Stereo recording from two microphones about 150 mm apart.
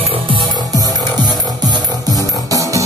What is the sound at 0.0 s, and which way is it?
Music, 35° right (ahead or behind).